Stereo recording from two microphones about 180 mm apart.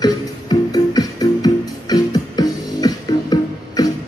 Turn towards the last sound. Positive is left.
turn(degrees=20)  # may be behind; listen again after turning